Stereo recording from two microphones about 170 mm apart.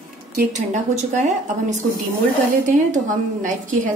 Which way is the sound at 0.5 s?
45° right (ahead or behind).